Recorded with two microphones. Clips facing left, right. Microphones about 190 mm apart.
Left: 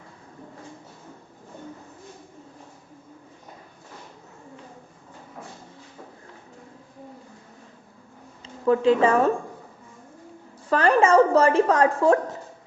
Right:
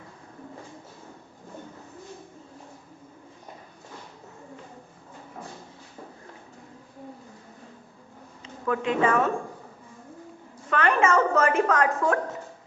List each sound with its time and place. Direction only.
8.6 s a woman's voice: 30° left (ahead or behind)
10.7 s a woman's voice: 35° left (ahead or behind)